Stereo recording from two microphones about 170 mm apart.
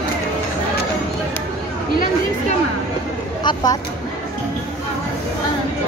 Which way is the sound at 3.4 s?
20° left (ahead or behind).